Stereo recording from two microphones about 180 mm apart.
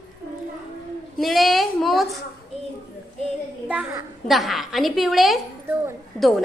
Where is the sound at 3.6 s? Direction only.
10° right (ahead or behind).